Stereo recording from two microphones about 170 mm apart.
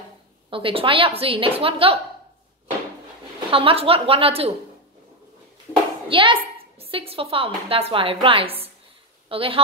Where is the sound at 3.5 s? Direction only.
35° right (ahead or behind).